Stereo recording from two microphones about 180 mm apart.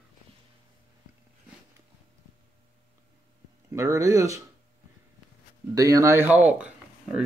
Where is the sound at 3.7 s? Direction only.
15° right (ahead or behind).